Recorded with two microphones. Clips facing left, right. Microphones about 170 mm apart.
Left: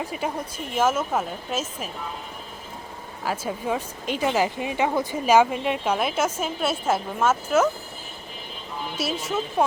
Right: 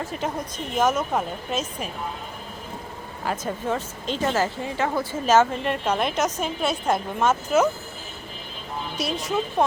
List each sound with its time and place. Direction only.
0.0 s speech: 10° left (ahead or behind)
3.2 s a woman's voice: 10° left (ahead or behind)
9.0 s a woman's voice: 5° left (ahead or behind)